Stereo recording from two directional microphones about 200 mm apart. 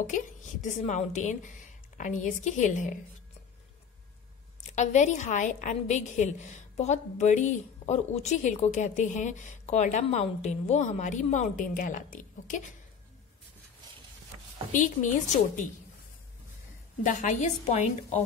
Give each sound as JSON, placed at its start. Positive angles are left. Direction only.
{"t": 0.0, "sound": "a woman's voice", "side_deg": 40}
{"t": 4.7, "sound": "a woman's voice", "side_deg": 35}
{"t": 14.7, "sound": "a woman's voice", "side_deg": 40}
{"t": 17.0, "sound": "a woman's voice", "side_deg": 40}